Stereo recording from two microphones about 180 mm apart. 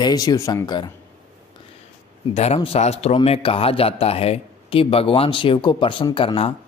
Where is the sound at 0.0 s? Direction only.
20° left (ahead or behind).